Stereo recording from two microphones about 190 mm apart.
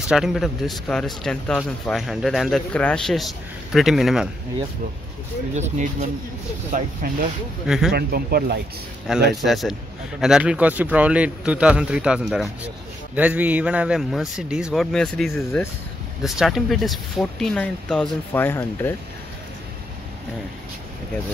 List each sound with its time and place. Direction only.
0.1 s a man's voice: centre (ahead or behind)
5.5 s speech: 35° right (ahead or behind)
6.7 s speech: 50° right (ahead or behind)
7.6 s a man's voice: centre (ahead or behind)
7.9 s speech: 55° right (ahead or behind)
9.3 s a man's voice: centre (ahead or behind)